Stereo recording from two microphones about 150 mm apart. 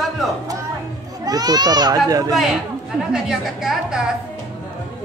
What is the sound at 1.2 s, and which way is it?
Speech, 25° right (ahead or behind).